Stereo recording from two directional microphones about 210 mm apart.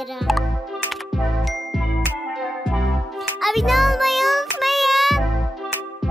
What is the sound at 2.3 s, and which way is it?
Music, centre (ahead or behind).